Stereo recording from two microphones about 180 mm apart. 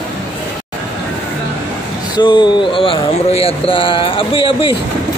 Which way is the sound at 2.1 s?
25° left (ahead or behind).